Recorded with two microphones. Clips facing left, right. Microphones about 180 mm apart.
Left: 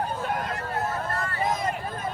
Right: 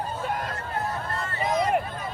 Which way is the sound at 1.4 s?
50° left (ahead or behind).